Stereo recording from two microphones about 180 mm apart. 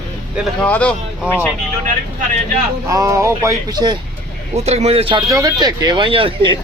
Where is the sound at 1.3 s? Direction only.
5° right (ahead or behind).